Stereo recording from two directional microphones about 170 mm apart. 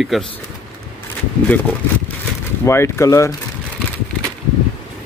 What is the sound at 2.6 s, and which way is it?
Speech, 15° left (ahead or behind).